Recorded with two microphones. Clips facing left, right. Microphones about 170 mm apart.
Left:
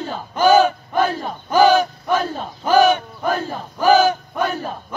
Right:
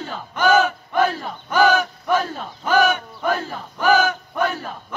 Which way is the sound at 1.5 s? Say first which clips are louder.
Left 4 dB; 30° left (ahead or behind).